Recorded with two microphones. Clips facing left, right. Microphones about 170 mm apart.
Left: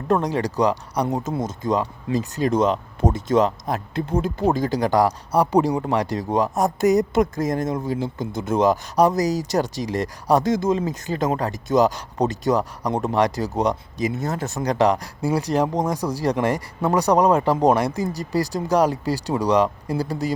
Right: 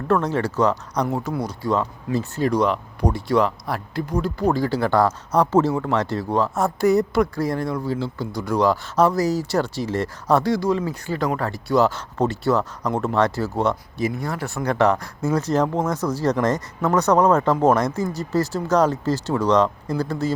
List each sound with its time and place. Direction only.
0.1 s speech: 15° left (ahead or behind)